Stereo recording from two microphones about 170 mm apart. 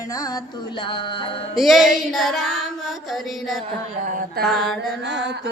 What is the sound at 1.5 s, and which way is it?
Music, centre (ahead or behind).